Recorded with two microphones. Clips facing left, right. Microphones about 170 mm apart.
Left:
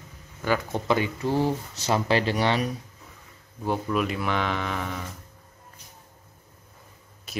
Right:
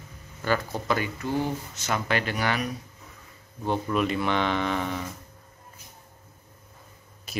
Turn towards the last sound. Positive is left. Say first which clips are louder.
# even
turn(degrees=0)  # may be behind; listen again after turning